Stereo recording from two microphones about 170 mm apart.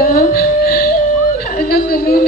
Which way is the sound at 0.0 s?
60° left (ahead or behind).